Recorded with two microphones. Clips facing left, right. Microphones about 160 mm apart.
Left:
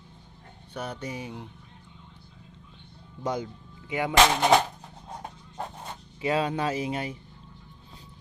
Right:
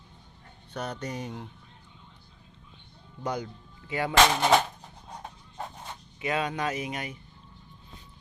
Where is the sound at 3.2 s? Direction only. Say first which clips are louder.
Left 2 dB; 25° left (ahead or behind).